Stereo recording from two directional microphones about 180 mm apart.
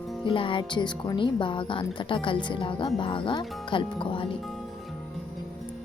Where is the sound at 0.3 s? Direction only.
30° left (ahead or behind).